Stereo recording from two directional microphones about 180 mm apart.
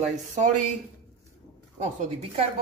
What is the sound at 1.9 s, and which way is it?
Speech, 40° right (ahead or behind).